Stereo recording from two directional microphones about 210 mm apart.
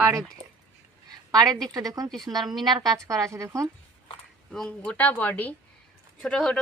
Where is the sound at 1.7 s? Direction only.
15° right (ahead or behind).